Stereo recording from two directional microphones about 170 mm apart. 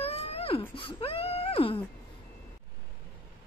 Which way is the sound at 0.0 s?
35° left (ahead or behind).